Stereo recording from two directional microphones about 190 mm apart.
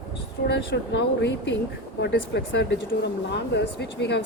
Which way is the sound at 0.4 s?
65° left (ahead or behind).